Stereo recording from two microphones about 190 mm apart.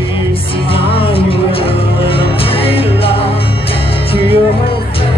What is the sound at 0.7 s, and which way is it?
Music, 30° left (ahead or behind).